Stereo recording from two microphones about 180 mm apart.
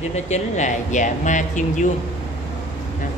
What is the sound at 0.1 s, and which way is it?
Speech, 40° left (ahead or behind).